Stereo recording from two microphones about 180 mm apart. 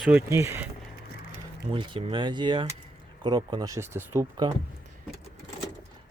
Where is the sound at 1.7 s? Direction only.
30° right (ahead or behind).